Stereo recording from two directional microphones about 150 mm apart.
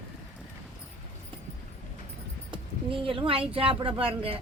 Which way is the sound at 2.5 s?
35° right (ahead or behind).